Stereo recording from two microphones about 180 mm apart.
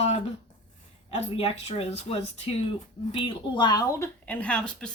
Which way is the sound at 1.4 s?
35° left (ahead or behind).